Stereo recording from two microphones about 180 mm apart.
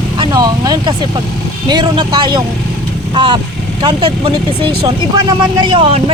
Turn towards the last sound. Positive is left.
turn(degrees=-30)  # may be behind; listen again after turning